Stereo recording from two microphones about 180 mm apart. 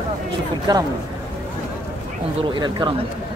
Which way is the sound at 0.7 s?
25° right (ahead or behind).